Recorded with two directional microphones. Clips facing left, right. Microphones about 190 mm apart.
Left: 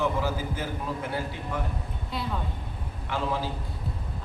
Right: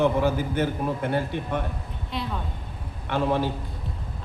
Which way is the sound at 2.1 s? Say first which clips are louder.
Right 2 dB; centre (ahead or behind).